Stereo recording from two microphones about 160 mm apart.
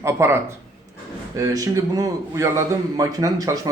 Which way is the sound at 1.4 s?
20° right (ahead or behind).